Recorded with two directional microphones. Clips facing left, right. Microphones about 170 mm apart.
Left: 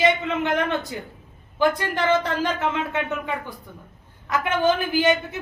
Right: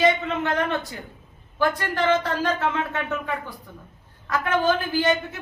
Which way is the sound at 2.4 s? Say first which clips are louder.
Even; 20° left (ahead or behind).